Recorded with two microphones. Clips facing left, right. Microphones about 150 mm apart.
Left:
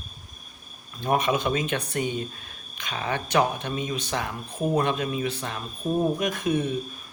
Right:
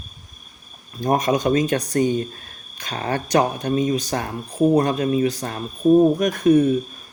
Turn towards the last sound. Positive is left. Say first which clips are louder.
# right 9 dB
turn(degrees=-45)  # may be behind; listen again after turning